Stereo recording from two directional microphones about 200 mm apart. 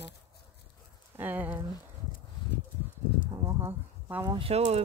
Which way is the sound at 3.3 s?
15° right (ahead or behind).